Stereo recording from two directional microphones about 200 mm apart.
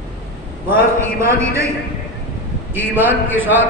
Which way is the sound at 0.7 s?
15° right (ahead or behind).